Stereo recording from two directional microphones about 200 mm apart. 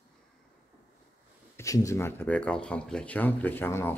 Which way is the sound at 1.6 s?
15° left (ahead or behind).